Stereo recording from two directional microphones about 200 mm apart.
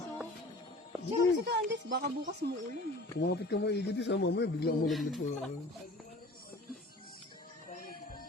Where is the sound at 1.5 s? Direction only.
60° right (ahead or behind).